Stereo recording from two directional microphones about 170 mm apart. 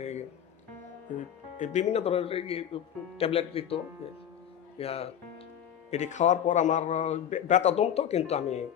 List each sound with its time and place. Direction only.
0.0 s music: 40° left (ahead or behind)
1.5 s a man's voice: 45° left (ahead or behind)